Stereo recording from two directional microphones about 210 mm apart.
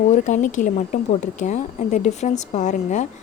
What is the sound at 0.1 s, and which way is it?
A woman's voice, 35° left (ahead or behind).